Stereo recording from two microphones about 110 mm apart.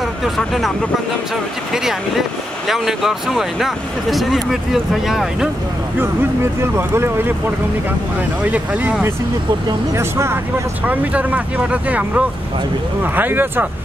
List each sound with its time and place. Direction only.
0.0 s speech: centre (ahead or behind)
6.6 s speech: 20° right (ahead or behind)
10.9 s speech: 15° right (ahead or behind)